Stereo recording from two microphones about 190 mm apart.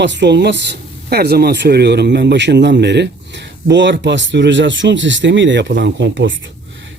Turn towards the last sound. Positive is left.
turn(degrees=-75)  # may be behind; listen again after turning